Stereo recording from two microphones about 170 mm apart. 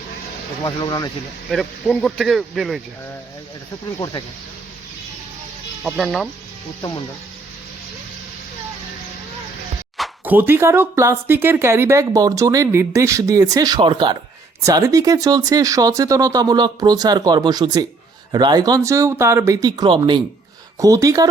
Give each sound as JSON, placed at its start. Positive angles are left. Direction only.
{"t": 0.6, "sound": "speech", "side_deg": 25}
{"t": 1.5, "sound": "speech", "side_deg": 0}
{"t": 5.8, "sound": "speech", "side_deg": 0}
{"t": 10.2, "sound": "speech", "side_deg": -10}